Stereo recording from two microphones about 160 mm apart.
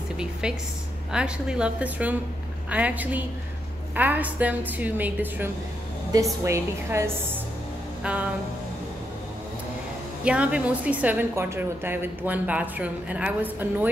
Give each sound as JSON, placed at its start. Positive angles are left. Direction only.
{"t": 0.2, "sound": "a woman's voice", "side_deg": -5}
{"t": 8.0, "sound": "a sound", "side_deg": -10}
{"t": 10.2, "sound": "a woman's voice", "side_deg": -5}